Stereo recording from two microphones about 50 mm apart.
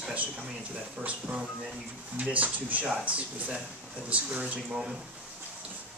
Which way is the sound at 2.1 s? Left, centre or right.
Right.